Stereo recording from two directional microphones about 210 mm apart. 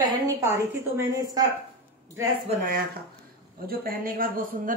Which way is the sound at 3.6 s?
45° right (ahead or behind).